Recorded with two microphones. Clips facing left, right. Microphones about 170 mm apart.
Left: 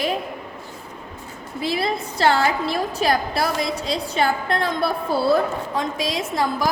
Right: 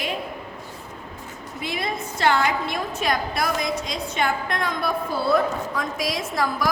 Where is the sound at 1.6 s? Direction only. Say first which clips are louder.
Left 5 dB; 30° left (ahead or behind).